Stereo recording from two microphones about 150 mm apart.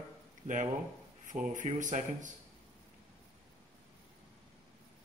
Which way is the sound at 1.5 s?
55° right (ahead or behind).